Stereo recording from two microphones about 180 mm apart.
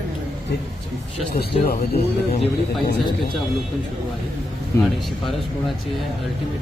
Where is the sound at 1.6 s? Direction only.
35° left (ahead or behind).